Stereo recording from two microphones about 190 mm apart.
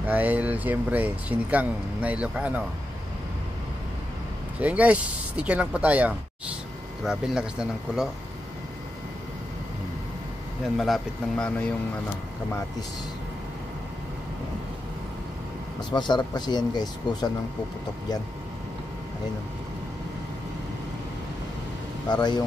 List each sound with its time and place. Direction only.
0.0 s speech: 10° right (ahead or behind)
4.6 s speech: 10° right (ahead or behind)
10.8 s speech: centre (ahead or behind)
15.9 s speech: 25° left (ahead or behind)
22.0 s speech: 20° left (ahead or behind)